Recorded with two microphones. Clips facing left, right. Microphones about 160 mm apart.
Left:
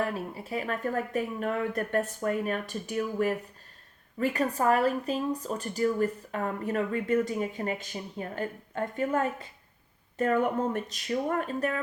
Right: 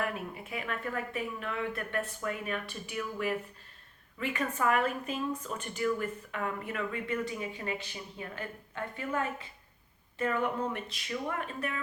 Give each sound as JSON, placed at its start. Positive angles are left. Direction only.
{"t": 0.0, "sound": "speech", "side_deg": 35}